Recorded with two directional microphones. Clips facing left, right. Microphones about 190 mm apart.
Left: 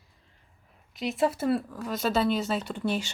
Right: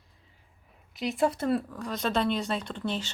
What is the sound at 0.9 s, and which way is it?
Speech, centre (ahead or behind).